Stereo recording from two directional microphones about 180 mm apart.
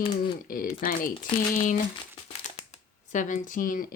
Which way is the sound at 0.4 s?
50° left (ahead or behind).